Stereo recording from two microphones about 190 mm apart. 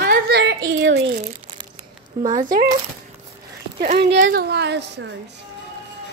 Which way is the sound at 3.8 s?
55° right (ahead or behind).